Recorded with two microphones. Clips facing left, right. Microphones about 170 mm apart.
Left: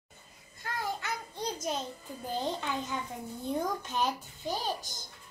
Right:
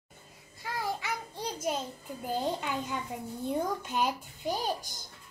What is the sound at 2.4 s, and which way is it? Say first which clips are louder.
A child's voice: right 1 dB; 10° right (ahead or behind).